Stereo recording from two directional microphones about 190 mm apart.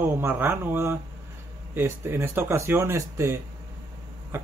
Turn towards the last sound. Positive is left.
turn(degrees=-15)  # may be behind; listen again after turning